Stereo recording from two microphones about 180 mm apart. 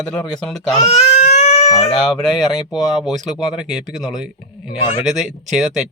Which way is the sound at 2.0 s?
5° left (ahead or behind).